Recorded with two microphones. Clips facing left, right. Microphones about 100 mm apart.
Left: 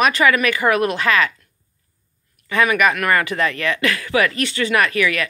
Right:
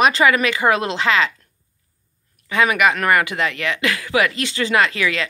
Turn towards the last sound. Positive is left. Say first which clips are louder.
# even
turn(degrees=-20)  # may be behind; listen again after turning